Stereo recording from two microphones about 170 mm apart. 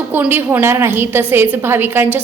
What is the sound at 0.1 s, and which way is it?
A woman's voice, 10° right (ahead or behind).